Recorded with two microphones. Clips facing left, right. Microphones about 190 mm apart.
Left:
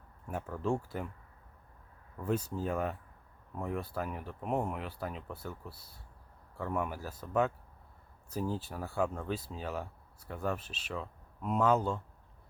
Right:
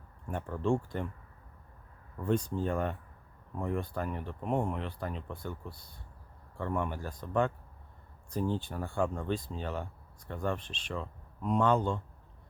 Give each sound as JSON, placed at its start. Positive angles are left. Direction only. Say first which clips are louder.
{"t": 0.3, "sound": "speech", "louder": "right 3 dB", "side_deg": 5}
{"t": 2.1, "sound": "speech", "louder": "right 3 dB", "side_deg": 5}